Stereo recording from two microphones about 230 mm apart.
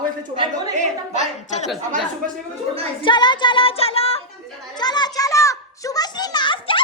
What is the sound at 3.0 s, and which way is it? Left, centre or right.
Music, centre.